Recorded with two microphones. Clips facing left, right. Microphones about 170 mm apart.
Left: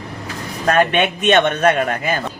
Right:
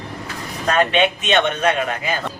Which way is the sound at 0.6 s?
55° left (ahead or behind).